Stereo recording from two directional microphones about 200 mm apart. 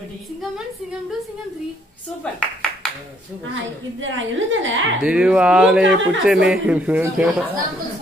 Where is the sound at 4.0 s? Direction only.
70° right (ahead or behind).